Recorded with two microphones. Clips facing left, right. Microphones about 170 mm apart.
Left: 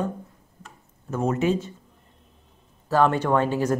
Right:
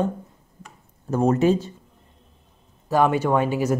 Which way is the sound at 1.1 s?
35° right (ahead or behind).